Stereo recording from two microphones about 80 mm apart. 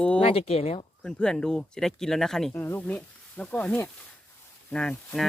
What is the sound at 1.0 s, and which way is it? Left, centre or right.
Speech, centre.